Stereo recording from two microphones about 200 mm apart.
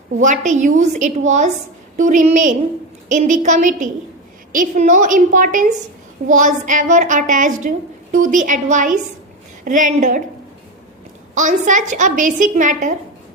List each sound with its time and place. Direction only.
0.2 s a woman's voice: 40° right (ahead or behind)
11.3 s a woman's voice: 40° right (ahead or behind)